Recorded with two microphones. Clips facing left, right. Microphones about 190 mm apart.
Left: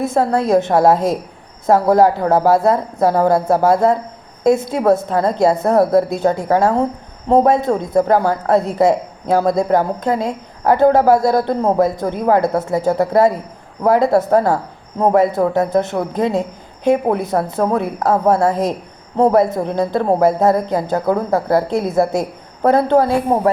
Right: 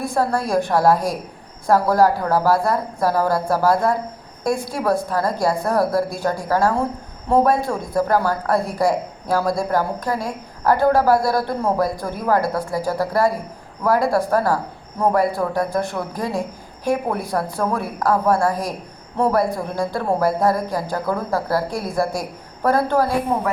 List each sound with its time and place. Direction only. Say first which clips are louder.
0.0 s a woman's voice: left 5 dB; 20° left (ahead or behind)